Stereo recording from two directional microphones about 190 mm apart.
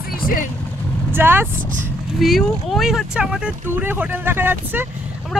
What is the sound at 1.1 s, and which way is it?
Speech, 10° right (ahead or behind).